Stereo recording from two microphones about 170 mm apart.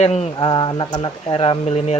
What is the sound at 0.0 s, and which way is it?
Speech, 40° left (ahead or behind).